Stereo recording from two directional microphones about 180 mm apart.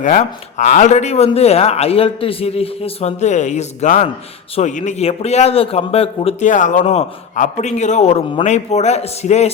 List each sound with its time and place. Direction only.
0.0 s speech: 45° left (ahead or behind)
6.5 s speech: 45° left (ahead or behind)